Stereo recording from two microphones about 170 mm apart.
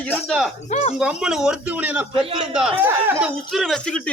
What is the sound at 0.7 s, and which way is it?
Speech, 40° left (ahead or behind).